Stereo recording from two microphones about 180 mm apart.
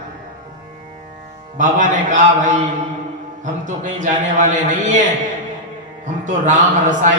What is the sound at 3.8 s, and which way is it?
Speech, 45° right (ahead or behind).